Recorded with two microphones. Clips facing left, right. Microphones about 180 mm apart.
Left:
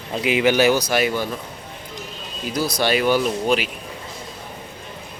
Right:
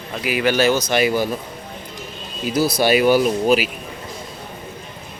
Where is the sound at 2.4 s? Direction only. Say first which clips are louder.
Right 4 dB; 10° right (ahead or behind).